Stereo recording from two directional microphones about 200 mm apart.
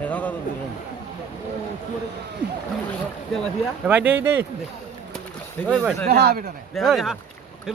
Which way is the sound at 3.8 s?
10° right (ahead or behind).